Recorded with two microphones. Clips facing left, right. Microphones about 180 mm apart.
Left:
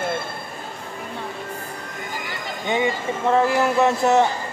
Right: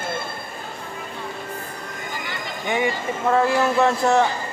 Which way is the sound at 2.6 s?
20° left (ahead or behind).